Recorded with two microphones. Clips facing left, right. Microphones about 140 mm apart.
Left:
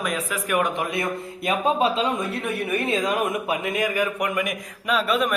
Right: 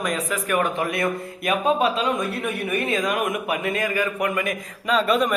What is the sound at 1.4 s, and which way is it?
Speech, 30° left (ahead or behind).